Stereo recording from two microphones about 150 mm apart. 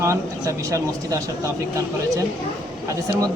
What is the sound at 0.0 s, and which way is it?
A man's voice, 20° right (ahead or behind).